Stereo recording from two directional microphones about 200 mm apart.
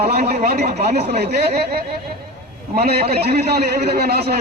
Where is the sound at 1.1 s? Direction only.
55° right (ahead or behind).